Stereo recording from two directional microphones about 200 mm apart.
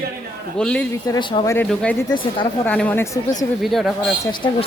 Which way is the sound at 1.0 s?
20° left (ahead or behind).